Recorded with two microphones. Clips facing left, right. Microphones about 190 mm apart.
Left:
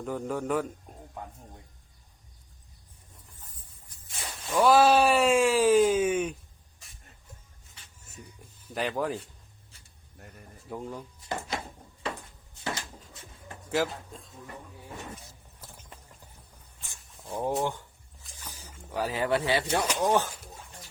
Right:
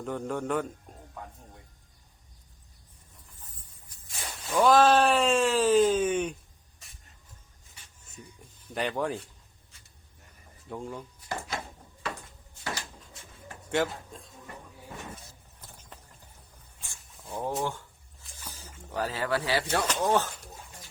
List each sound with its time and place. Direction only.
0.0 s a man's voice: centre (ahead or behind)
3.8 s a sound: centre (ahead or behind)
4.5 s speech: 10° left (ahead or behind)
8.1 s a sound: centre (ahead or behind)
10.7 s a man's voice: 5° left (ahead or behind)
11.2 s drawer open or close: 25° left (ahead or behind)
13.7 s speech: centre (ahead or behind)
16.9 s a sound: 10° left (ahead or behind)
19.6 s speech: 10° left (ahead or behind)